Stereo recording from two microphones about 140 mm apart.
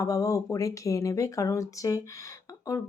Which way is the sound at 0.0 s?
25° left (ahead or behind).